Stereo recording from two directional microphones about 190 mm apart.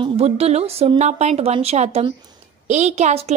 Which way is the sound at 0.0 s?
35° right (ahead or behind).